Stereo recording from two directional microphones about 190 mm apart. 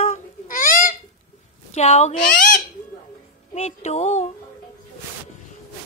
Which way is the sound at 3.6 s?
35° left (ahead or behind).